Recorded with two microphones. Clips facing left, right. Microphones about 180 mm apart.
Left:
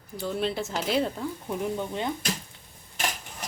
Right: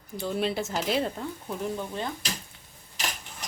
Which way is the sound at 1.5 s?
15° left (ahead or behind).